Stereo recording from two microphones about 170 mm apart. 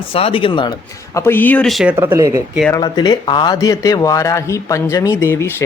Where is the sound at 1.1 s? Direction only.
10° left (ahead or behind).